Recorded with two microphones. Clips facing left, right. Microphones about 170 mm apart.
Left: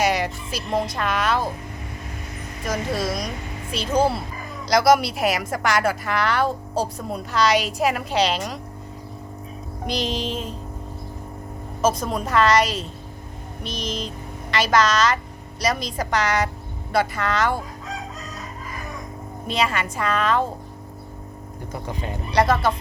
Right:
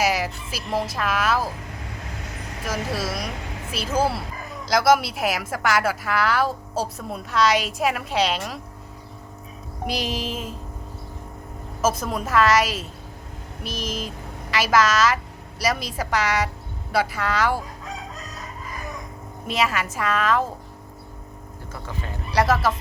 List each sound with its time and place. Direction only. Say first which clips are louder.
0.0 s speech: left 1 dB; 5° right (ahead or behind)
2.6 s a woman's voice: left 3 dB; 5° right (ahead or behind)
9.8 s a woman's voice: left 1 dB; 5° right (ahead or behind)
11.8 s a woman's voice: left 2 dB; 5° right (ahead or behind)
19.5 s a woman's voice: even; 5° right (ahead or behind)
21.7 s speech: left 4 dB; 20° left (ahead or behind)
22.3 s a woman's voice: left 1 dB; 5° right (ahead or behind)